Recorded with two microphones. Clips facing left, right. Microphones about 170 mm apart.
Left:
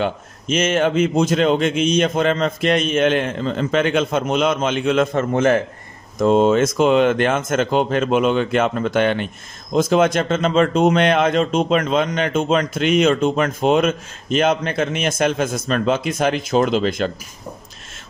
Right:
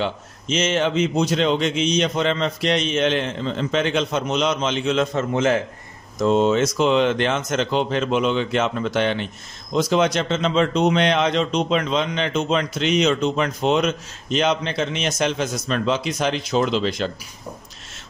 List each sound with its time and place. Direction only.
0.0 s a man's voice: 50° left (ahead or behind)